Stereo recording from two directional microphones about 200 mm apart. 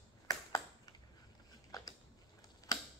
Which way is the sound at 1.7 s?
20° left (ahead or behind).